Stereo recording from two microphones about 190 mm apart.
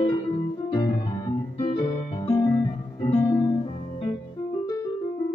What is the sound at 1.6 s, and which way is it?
Music, 30° left (ahead or behind).